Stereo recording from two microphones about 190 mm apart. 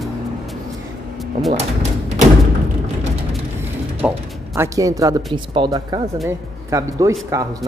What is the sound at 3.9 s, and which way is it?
Speech, 10° right (ahead or behind).